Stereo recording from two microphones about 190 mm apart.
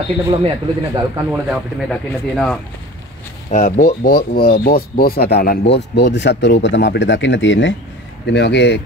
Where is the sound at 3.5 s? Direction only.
40° left (ahead or behind).